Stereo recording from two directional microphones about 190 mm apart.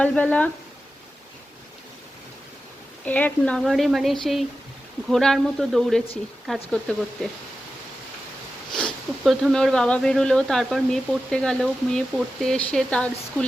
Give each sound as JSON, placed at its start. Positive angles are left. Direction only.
{"t": 0.0, "sound": "speech", "side_deg": 5}
{"t": 3.0, "sound": "speech", "side_deg": 10}
{"t": 8.7, "sound": "speech", "side_deg": 0}